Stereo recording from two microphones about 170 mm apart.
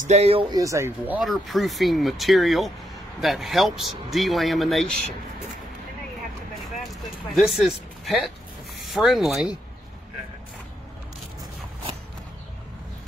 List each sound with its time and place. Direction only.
0.0 s speech: 40° right (ahead or behind)
0.6 s speech: 15° right (ahead or behind); by 5.0 s 5° left (ahead or behind)
6.9 s a sound: centre (ahead or behind)
8.8 s speech: centre (ahead or behind)